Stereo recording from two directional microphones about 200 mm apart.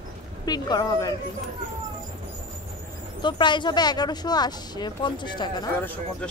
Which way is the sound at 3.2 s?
25° left (ahead or behind).